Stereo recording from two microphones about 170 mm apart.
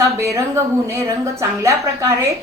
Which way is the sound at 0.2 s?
15° right (ahead or behind).